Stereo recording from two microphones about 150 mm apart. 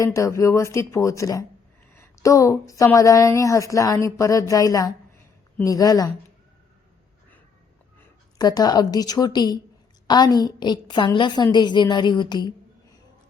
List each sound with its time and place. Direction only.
0.0 s speech: 20° left (ahead or behind)
8.4 s speech: 25° left (ahead or behind)